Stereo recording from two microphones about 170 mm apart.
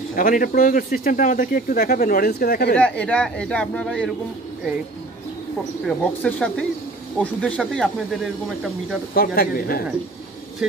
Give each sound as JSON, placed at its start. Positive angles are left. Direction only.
{"t": 0.1, "sound": "speech", "side_deg": 55}
{"t": 2.8, "sound": "speech", "side_deg": 10}
{"t": 5.9, "sound": "speech", "side_deg": 5}
{"t": 9.1, "sound": "speech", "side_deg": 60}